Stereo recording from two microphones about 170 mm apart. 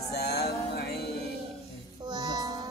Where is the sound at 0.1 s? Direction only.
70° left (ahead or behind).